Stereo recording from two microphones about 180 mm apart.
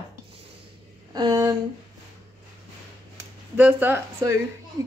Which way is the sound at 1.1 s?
25° right (ahead or behind).